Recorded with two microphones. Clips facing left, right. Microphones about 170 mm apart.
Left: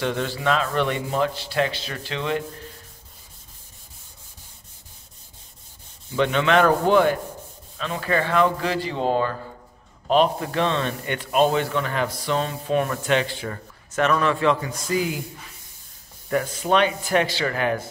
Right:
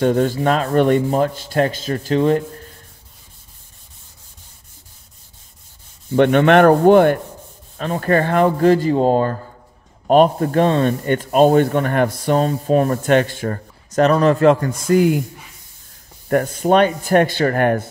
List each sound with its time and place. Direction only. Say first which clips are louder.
0.0 s speech: right 8 dB; 45° right (ahead or behind)
6.1 s sanding: right 7 dB; 55° right (ahead or behind)
7.7 s speech: right 7 dB; 45° right (ahead or behind)
16.3 s speech: right 6 dB; 50° right (ahead or behind)